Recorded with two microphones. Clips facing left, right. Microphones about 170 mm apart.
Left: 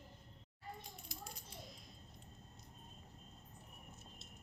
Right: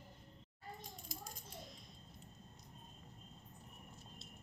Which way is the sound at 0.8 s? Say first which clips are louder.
Right 1 dB; 45° right (ahead or behind).